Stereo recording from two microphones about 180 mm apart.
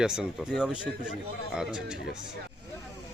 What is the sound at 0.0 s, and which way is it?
A man's voice, 5° right (ahead or behind).